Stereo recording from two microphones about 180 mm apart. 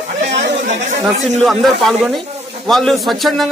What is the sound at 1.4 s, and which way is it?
A man's voice, centre (ahead or behind).